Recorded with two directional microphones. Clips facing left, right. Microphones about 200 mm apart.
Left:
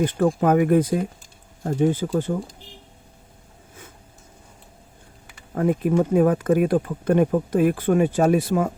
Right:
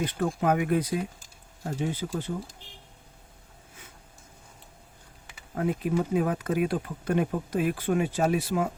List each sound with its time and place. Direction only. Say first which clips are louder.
0.0 s speech: left 7 dB; 50° left (ahead or behind)
5.5 s speech: left 7 dB; 50° left (ahead or behind)